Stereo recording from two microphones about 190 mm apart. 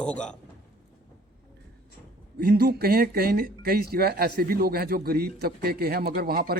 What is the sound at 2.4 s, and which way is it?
Speech, 50° right (ahead or behind).